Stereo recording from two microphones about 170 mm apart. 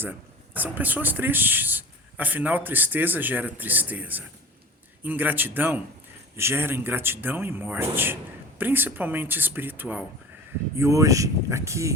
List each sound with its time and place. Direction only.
0.5 s speech: 10° right (ahead or behind)